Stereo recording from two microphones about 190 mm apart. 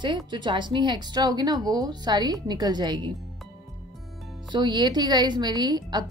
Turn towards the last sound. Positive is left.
turn(degrees=-20)  # may be behind; listen again after turning